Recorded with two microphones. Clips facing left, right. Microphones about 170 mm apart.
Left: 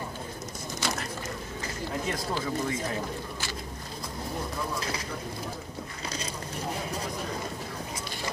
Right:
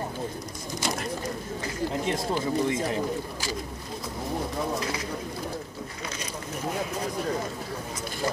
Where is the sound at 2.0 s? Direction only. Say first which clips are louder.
Right 2 dB; 25° right (ahead or behind).